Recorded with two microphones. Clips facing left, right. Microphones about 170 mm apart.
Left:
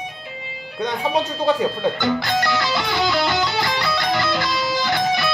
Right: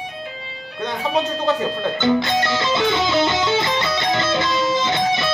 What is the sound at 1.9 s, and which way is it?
Music, 20° right (ahead or behind).